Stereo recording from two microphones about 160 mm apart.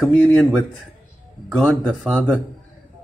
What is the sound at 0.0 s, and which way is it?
Speech, 5° left (ahead or behind).